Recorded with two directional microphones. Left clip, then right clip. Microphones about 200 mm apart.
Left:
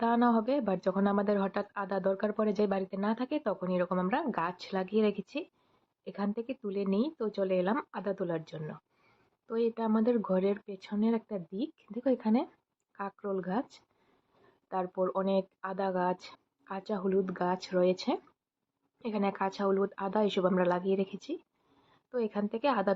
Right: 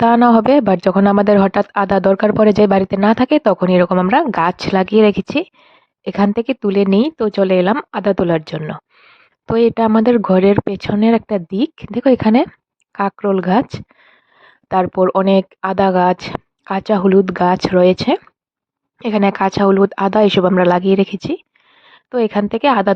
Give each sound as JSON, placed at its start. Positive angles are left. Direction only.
{"t": 0.0, "sound": "a woman's voice", "side_deg": -50}